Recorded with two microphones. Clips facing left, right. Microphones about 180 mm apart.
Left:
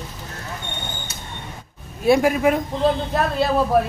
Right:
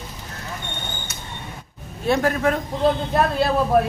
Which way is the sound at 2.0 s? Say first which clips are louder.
Left 4 dB; 10° left (ahead or behind).